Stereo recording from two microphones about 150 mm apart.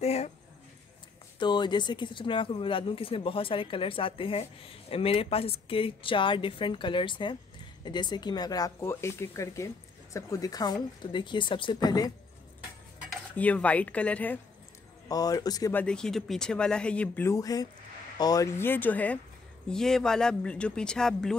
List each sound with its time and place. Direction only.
0.0 s a sound: 45° left (ahead or behind)
1.4 s speech: 30° left (ahead or behind)
13.4 s speech: 10° left (ahead or behind)
15.0 s speech: 25° left (ahead or behind)
15.7 s speech: 5° left (ahead or behind)